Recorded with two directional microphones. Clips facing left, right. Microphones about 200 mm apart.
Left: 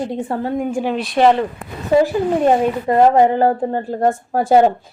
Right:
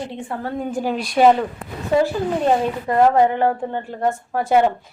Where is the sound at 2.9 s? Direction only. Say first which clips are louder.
Left 3 dB; 25° left (ahead or behind).